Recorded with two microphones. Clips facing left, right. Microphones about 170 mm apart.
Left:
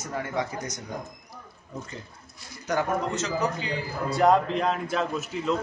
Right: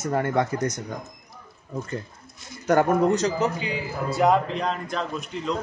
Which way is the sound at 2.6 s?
55° right (ahead or behind).